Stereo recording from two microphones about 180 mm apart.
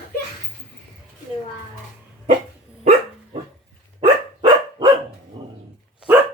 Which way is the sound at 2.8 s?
35° right (ahead or behind).